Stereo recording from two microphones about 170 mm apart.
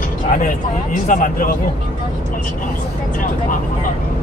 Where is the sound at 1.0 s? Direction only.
50° left (ahead or behind).